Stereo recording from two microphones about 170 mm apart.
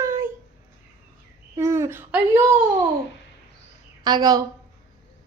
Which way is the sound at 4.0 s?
25° right (ahead or behind).